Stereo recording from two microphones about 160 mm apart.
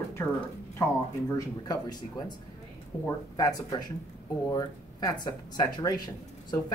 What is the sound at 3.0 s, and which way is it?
Speech, 25° left (ahead or behind).